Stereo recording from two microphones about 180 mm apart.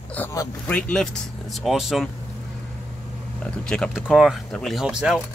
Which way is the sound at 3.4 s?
5° left (ahead or behind).